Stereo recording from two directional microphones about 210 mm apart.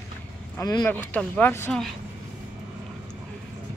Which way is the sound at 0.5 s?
20° left (ahead or behind).